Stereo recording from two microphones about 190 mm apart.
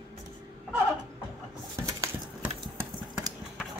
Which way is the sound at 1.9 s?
15° right (ahead or behind).